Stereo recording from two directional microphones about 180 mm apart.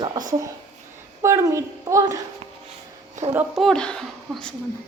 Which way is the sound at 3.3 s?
10° right (ahead or behind).